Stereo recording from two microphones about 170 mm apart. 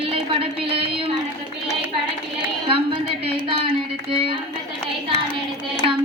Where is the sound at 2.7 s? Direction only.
30° right (ahead or behind).